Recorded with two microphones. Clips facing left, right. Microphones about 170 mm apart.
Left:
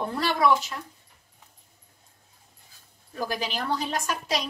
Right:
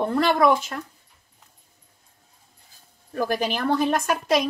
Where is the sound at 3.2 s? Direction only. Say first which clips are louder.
Right 6 dB; 55° right (ahead or behind).